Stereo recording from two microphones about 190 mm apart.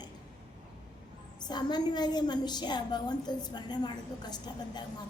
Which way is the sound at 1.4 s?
20° left (ahead or behind).